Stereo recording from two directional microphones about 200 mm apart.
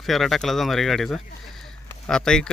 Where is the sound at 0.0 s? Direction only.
Centre (ahead or behind).